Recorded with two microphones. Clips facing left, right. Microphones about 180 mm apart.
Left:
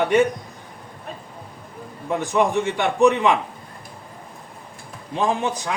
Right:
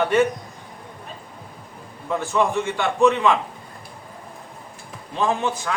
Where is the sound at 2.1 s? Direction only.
15° left (ahead or behind).